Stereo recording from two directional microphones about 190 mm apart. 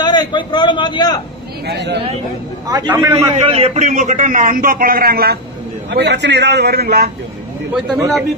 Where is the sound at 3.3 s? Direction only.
30° right (ahead or behind); by 5.4 s 55° right (ahead or behind).